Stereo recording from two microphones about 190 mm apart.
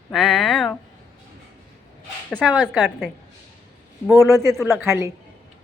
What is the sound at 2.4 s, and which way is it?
Speech, 5° right (ahead or behind).